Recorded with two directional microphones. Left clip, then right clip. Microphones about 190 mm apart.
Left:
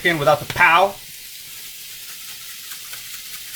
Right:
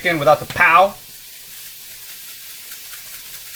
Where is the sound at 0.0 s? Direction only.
20° right (ahead or behind).